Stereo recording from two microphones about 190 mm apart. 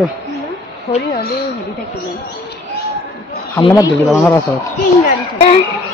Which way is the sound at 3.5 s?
20° left (ahead or behind).